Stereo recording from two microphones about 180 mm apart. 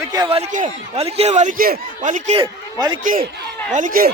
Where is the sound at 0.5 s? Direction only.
40° right (ahead or behind).